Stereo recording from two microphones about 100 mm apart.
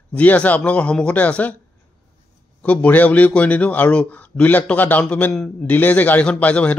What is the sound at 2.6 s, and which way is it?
A man's voice, 15° left (ahead or behind).